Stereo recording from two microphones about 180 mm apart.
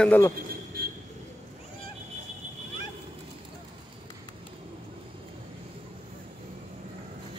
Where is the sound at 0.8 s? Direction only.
55° right (ahead or behind).